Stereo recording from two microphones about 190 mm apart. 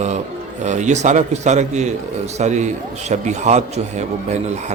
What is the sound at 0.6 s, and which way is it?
A man's voice, 40° right (ahead or behind).